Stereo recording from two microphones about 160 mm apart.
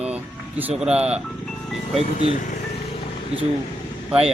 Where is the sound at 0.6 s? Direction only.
10° right (ahead or behind).